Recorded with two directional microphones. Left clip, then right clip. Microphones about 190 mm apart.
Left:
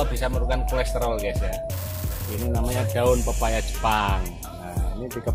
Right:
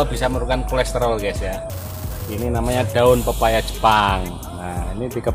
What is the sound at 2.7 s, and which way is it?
Speech, 20° right (ahead or behind).